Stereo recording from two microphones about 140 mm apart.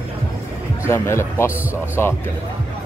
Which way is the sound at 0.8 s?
20° left (ahead or behind).